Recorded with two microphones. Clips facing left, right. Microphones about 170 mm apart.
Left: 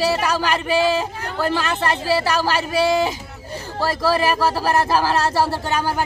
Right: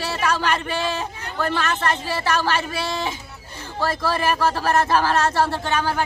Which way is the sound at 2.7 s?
10° left (ahead or behind).